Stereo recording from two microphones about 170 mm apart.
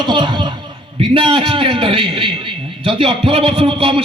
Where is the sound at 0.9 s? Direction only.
30° right (ahead or behind).